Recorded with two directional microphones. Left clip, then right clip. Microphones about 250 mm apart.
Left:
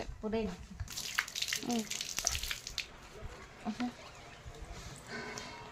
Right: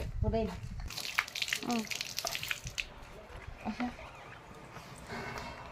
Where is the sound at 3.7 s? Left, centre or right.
Centre.